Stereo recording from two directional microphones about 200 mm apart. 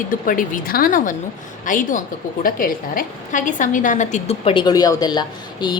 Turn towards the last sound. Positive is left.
turn(degrees=20)  # may be behind; listen again after turning